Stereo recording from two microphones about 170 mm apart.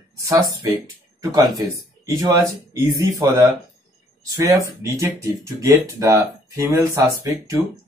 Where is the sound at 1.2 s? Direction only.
20° right (ahead or behind).